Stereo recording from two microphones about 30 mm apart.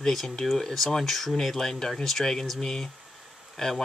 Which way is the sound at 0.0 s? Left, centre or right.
Centre.